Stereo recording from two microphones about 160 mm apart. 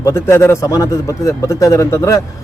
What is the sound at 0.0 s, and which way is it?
Speech, 15° left (ahead or behind).